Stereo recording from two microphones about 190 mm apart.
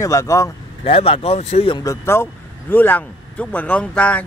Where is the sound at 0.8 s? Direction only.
30° left (ahead or behind); by 4.2 s 5° left (ahead or behind).